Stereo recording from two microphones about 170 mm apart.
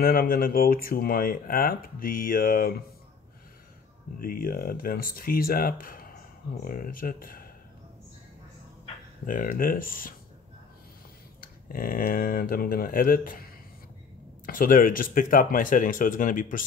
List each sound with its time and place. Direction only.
0.0 s speech: 60° left (ahead or behind)
4.2 s speech: 55° left (ahead or behind)
9.2 s speech: 55° left (ahead or behind)
11.4 s speech: 55° left (ahead or behind)